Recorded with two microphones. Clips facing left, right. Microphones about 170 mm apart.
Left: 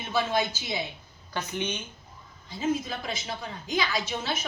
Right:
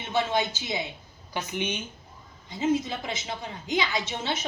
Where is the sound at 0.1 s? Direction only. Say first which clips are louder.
Right 1 dB; 20° right (ahead or behind).